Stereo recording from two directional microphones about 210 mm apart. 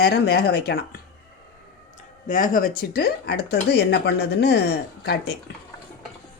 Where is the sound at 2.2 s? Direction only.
40° left (ahead or behind).